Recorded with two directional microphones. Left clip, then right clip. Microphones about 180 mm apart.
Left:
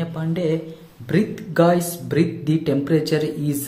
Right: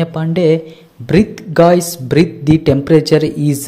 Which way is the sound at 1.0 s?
40° right (ahead or behind).